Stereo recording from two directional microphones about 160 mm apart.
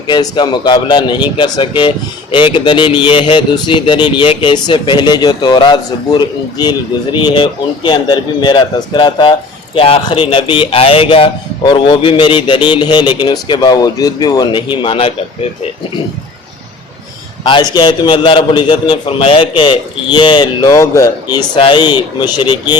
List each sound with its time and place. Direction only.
0.1 s speech: 25° left (ahead or behind)
17.4 s speech: 30° left (ahead or behind)